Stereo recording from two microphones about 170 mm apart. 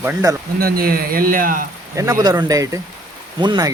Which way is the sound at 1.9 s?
20° right (ahead or behind).